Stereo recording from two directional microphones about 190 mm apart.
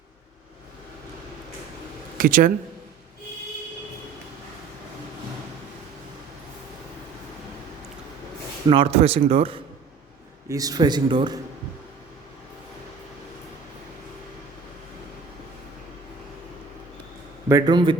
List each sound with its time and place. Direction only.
2.1 s speech: 45° right (ahead or behind)
8.7 s speech: 30° right (ahead or behind)
10.5 s speech: 20° right (ahead or behind)
17.5 s speech: 20° right (ahead or behind)